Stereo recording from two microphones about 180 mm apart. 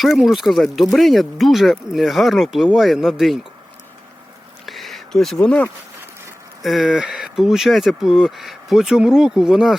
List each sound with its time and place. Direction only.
0.0 s speech: centre (ahead or behind)
4.6 s a sound: centre (ahead or behind)
6.6 s speech: centre (ahead or behind)